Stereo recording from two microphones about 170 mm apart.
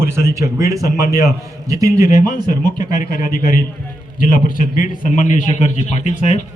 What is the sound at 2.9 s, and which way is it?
A man's voice, 55° left (ahead or behind).